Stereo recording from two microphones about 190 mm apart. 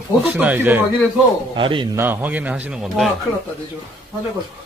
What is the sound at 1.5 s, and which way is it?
Speech, 25° right (ahead or behind).